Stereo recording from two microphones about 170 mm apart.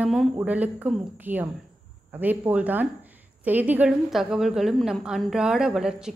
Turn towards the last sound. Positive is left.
turn(degrees=-5)  # may be behind; listen again after turning